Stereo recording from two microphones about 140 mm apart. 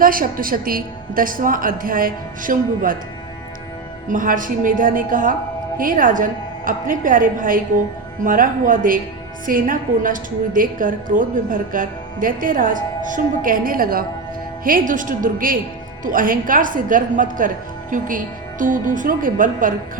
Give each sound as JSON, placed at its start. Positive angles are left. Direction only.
{"t": 0.0, "sound": "a woman's voice", "side_deg": -90}
{"t": 4.1, "sound": "a woman's voice", "side_deg": -70}
{"t": 14.6, "sound": "a woman's voice", "side_deg": -75}